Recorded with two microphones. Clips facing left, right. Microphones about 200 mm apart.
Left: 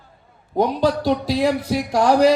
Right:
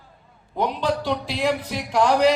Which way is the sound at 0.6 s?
40° left (ahead or behind).